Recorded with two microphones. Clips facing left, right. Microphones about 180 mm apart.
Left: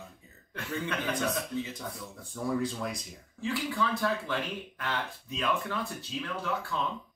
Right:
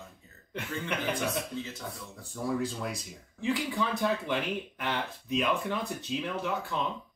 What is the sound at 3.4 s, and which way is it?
Speech, 20° right (ahead or behind).